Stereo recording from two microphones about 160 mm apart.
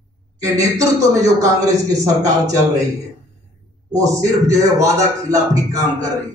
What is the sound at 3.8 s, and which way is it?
A man's voice, 20° right (ahead or behind).